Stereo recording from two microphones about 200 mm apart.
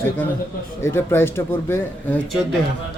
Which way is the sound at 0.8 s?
10° left (ahead or behind).